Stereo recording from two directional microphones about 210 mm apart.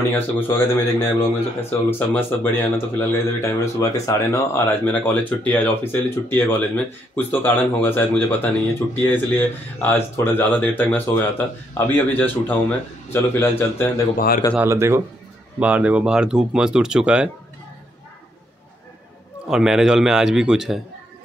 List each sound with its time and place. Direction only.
0.1 s speech: 10° left (ahead or behind)
14.1 s speech: 45° left (ahead or behind)
14.5 s speech: 10° right (ahead or behind)
19.5 s speech: centre (ahead or behind)